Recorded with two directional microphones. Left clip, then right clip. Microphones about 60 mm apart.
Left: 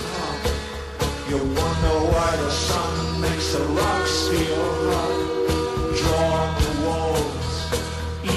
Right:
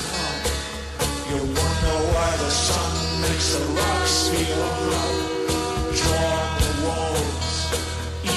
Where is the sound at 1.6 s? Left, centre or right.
Right.